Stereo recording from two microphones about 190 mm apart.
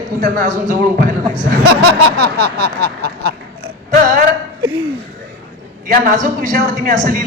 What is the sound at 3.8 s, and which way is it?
Speech, 45° right (ahead or behind).